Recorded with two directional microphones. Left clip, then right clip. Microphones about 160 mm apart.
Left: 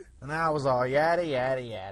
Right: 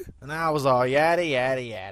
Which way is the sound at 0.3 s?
20° right (ahead or behind).